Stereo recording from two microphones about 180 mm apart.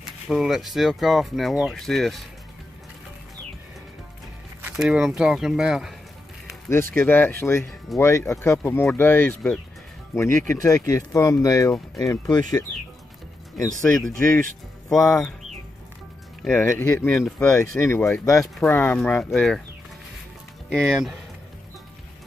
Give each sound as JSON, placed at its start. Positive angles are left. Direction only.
{"t": 0.0, "sound": "speech", "side_deg": 0}
{"t": 4.6, "sound": "speech", "side_deg": -5}
{"t": 6.7, "sound": "speech", "side_deg": 10}
{"t": 13.8, "sound": "speech", "side_deg": 10}
{"t": 16.4, "sound": "speech", "side_deg": 10}
{"t": 17.8, "sound": "speech", "side_deg": 15}
{"t": 20.7, "sound": "speech", "side_deg": 0}